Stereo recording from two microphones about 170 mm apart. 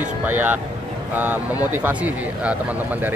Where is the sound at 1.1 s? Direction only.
10° right (ahead or behind).